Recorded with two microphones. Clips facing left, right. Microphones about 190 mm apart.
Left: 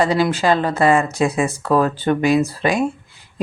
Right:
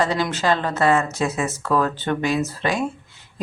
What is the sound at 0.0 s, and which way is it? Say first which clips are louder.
Speech: left 5 dB; 10° left (ahead or behind).